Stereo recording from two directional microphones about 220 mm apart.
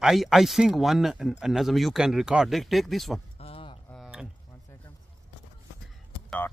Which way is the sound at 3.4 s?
25° left (ahead or behind).